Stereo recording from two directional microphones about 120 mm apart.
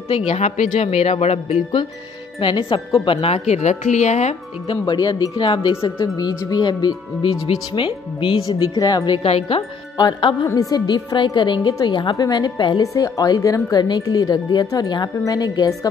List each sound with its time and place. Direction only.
0.1 s speech: 65° left (ahead or behind)
2.4 s speech: 45° left (ahead or behind); by 4.4 s 70° left (ahead or behind)
4.6 s speech: 35° left (ahead or behind)
6.1 s speech: 35° left (ahead or behind)
9.2 s speech: 60° left (ahead or behind)
9.9 s speech: 35° left (ahead or behind)